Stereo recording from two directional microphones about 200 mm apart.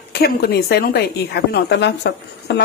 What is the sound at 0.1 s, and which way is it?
Speech, 50° left (ahead or behind).